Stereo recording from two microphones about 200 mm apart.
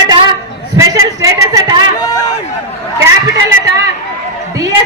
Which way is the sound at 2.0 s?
15° left (ahead or behind).